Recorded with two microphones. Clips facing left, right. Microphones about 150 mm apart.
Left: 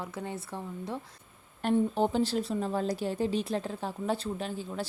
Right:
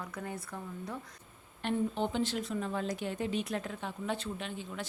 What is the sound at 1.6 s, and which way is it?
Speech, 40° left (ahead or behind).